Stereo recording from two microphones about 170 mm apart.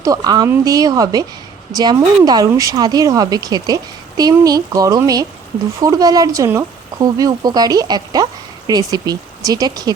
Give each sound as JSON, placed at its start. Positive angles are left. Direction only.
{"t": 0.0, "sound": "speech", "side_deg": -20}